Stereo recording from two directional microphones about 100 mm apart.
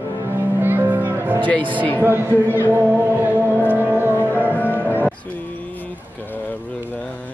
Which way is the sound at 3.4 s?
20° left (ahead or behind).